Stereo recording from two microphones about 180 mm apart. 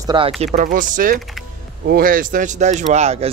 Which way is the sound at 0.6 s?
45° right (ahead or behind).